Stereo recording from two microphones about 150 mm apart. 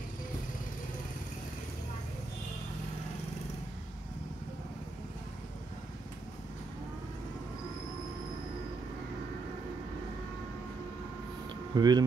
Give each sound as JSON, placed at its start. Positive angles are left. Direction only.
{"t": 11.7, "sound": "speech", "side_deg": -30}